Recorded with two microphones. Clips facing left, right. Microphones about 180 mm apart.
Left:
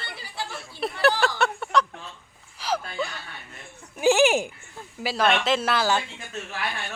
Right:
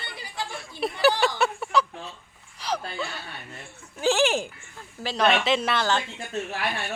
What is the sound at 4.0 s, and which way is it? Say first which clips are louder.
Speech: left 3 dB; 10° left (ahead or behind).